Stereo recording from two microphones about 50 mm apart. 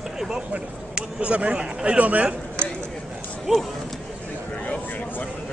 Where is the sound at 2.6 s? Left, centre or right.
Right.